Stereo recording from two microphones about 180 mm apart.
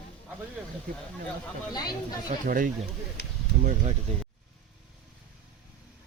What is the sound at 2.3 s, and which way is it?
Speech, 50° right (ahead or behind).